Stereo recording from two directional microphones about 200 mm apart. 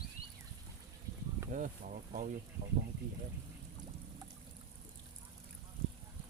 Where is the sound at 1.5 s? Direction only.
40° right (ahead or behind).